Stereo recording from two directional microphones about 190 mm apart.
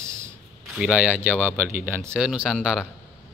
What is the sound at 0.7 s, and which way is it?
A man's voice, 5° right (ahead or behind).